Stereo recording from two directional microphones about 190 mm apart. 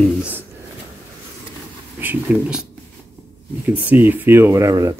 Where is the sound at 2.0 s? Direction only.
10° right (ahead or behind).